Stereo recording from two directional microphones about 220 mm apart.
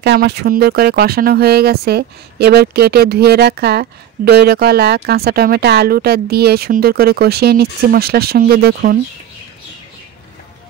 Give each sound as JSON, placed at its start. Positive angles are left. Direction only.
{"t": 0.0, "sound": "speech", "side_deg": -50}